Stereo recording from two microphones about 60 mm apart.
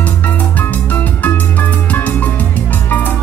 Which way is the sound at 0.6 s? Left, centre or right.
Left.